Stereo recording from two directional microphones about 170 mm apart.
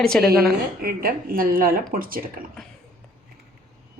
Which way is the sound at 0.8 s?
60° right (ahead or behind).